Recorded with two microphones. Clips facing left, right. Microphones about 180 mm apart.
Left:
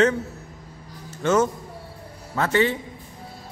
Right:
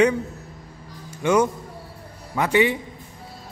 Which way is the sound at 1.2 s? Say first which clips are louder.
Right 1 dB; 15° right (ahead or behind).